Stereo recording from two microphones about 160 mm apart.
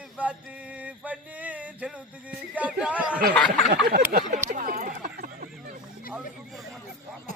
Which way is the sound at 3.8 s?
75° right (ahead or behind).